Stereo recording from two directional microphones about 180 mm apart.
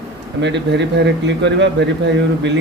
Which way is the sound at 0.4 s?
75° right (ahead or behind).